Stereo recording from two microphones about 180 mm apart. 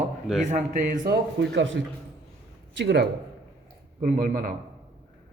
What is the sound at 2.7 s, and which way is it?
Speech, 70° right (ahead or behind).